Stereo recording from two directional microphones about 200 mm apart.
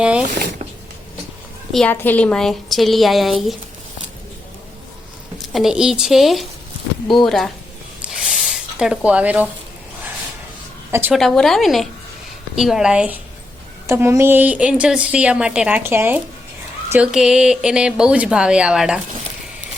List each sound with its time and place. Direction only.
0.0 s speech: 5° right (ahead or behind)
1.7 s speech: 5° left (ahead or behind)
5.4 s speech: centre (ahead or behind)
8.0 s a sound: 5° right (ahead or behind)
11.1 s a woman's voice: centre (ahead or behind)